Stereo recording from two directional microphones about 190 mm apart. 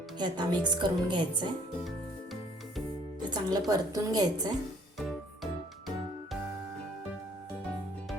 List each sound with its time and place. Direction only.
0.2 s a woman's voice: 25° right (ahead or behind)
3.2 s music: 20° right (ahead or behind)
3.7 s a woman's voice: 20° right (ahead or behind)
4.9 s music: centre (ahead or behind)